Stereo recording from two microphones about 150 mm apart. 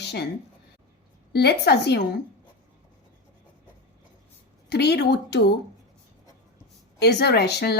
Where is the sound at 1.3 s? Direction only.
90° left.